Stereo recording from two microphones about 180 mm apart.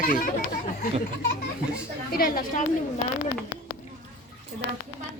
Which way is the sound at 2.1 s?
55° left (ahead or behind).